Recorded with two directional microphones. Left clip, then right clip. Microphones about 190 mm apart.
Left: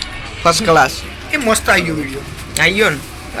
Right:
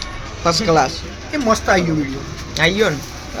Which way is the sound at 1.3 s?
35° right (ahead or behind).